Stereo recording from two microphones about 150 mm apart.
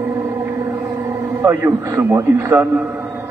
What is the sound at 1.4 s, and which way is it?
A man's voice, 20° right (ahead or behind).